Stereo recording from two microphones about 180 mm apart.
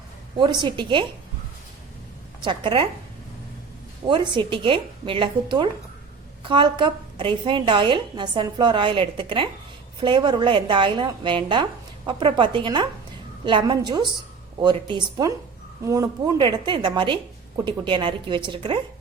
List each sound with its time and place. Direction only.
0.3 s a woman's voice: 25° right (ahead or behind)
2.4 s a woman's voice: 25° right (ahead or behind)
4.0 s a woman's voice: 25° right (ahead or behind)